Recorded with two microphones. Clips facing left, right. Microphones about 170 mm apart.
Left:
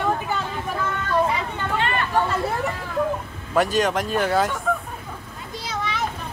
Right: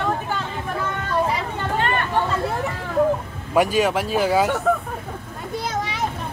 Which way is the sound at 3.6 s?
5° right (ahead or behind).